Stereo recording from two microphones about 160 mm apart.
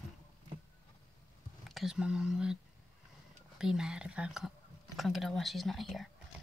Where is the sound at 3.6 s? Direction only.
5° right (ahead or behind).